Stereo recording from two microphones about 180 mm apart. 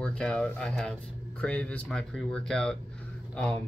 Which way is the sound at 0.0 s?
5° left (ahead or behind).